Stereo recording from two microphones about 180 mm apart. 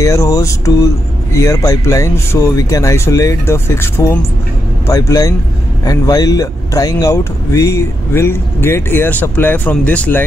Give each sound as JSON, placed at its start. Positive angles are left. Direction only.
{"t": 0.0, "sound": "a man's voice", "side_deg": 15}